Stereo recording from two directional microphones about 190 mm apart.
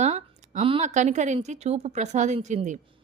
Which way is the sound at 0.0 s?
35° right (ahead or behind).